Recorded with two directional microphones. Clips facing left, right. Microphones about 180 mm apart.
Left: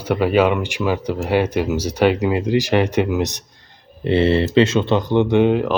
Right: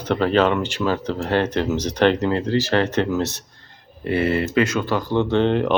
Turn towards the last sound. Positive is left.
turn(degrees=5)  # may be behind; listen again after turning